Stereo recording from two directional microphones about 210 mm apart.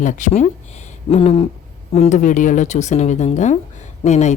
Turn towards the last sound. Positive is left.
turn(degrees=35)  # may be behind; listen again after turning